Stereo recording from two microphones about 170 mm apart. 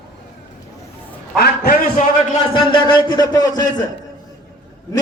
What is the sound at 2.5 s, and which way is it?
A man's voice, 30° left (ahead or behind).